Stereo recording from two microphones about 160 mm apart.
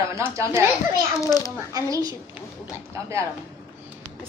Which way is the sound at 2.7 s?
15° right (ahead or behind).